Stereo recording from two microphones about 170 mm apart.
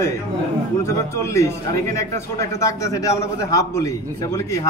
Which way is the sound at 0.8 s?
15° left (ahead or behind).